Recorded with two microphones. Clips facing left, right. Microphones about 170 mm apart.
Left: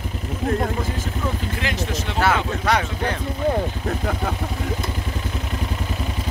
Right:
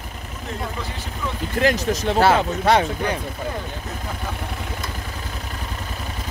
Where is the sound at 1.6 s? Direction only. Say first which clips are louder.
Right 9 dB; 40° right (ahead or behind).